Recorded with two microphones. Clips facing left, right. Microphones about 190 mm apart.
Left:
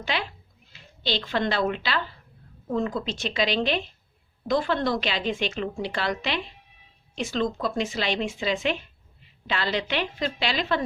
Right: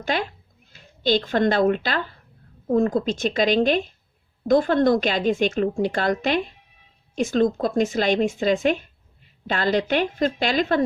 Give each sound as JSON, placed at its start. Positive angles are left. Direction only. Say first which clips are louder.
{"t": 0.0, "sound": "a woman's voice", "louder": "right 5 dB", "side_deg": -45}